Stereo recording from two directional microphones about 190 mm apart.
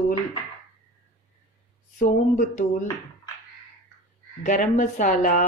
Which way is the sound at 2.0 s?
45° left (ahead or behind).